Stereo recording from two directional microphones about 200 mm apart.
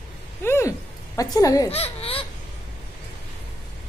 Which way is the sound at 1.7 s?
30° left (ahead or behind).